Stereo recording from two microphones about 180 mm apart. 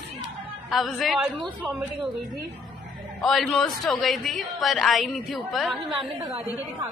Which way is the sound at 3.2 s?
Centre (ahead or behind).